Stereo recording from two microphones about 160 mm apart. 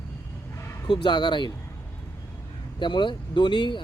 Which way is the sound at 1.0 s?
30° left (ahead or behind).